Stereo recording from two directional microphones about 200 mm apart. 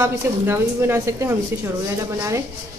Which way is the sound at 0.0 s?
15° right (ahead or behind).